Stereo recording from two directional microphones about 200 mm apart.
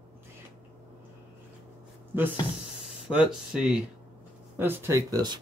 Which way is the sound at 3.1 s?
5° right (ahead or behind).